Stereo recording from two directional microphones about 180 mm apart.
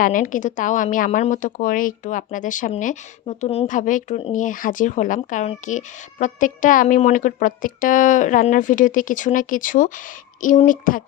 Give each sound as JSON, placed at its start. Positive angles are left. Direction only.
{"t": 0.0, "sound": "a woman's voice", "side_deg": 50}